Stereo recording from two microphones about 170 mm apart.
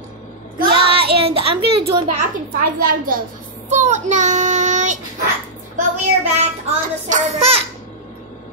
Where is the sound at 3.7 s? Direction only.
45° right (ahead or behind).